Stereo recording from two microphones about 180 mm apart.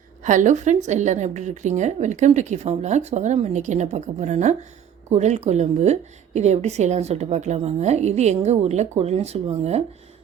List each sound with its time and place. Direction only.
0.3 s a woman's voice: 40° right (ahead or behind)